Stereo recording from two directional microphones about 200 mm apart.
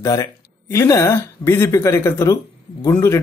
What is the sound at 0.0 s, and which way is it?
Speech, 15° left (ahead or behind).